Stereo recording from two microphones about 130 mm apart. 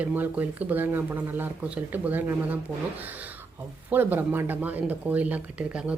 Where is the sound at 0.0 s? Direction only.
15° right (ahead or behind).